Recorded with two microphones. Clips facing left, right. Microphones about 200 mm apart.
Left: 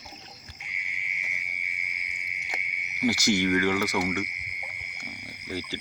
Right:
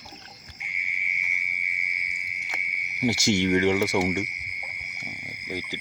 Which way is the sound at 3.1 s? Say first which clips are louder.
Right 2 dB; 25° right (ahead or behind).